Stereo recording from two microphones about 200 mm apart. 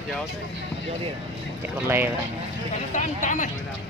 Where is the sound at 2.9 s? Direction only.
35° left (ahead or behind).